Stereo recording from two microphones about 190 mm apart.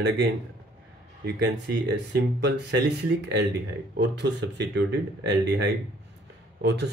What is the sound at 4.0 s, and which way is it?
Speech, 65° right (ahead or behind).